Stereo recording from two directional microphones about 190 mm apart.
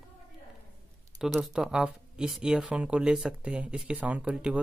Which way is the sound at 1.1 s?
Centre (ahead or behind).